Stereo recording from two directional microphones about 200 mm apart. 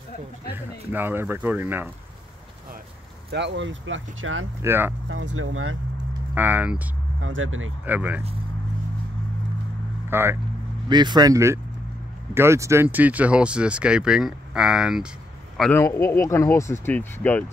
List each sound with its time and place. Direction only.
0.9 s speech: 10° right (ahead or behind)
3.3 s speech: 60° right (ahead or behind); by 4.5 s 85° right
4.6 s speech: 10° right (ahead or behind)
5.0 s speech: 75° right (ahead or behind); by 5.8 s 90° right
6.3 s speech: 10° right (ahead or behind)
7.2 s speech: 80° right
7.8 s speech: 10° right (ahead or behind)
10.0 s speech: 10° right (ahead or behind)
10.9 s speech: 20° right (ahead or behind); by 15.0 s 5° right (ahead or behind)
15.7 s speech: 15° left (ahead or behind)